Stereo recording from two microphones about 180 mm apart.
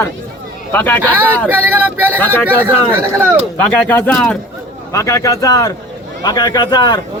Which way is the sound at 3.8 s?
10° left (ahead or behind).